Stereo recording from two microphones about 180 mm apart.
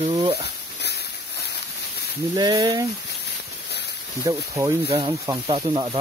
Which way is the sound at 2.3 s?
25° right (ahead or behind).